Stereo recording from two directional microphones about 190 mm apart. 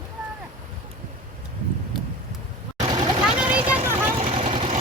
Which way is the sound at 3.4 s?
10° right (ahead or behind).